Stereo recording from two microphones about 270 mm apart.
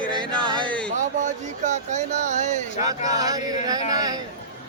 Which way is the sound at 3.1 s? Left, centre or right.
Centre.